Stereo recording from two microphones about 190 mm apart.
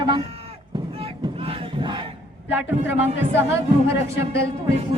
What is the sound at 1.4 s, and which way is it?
Crowd, 25° right (ahead or behind).